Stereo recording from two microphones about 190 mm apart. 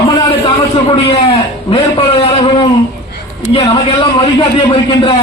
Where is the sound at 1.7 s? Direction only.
25° left (ahead or behind).